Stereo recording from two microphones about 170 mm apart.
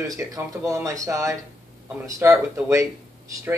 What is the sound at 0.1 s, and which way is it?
Speech, 20° right (ahead or behind).